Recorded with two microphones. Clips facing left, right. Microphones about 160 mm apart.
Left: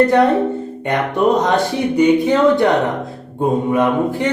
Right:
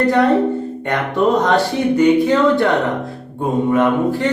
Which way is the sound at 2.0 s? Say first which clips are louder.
Left 1 dB; 20° left (ahead or behind).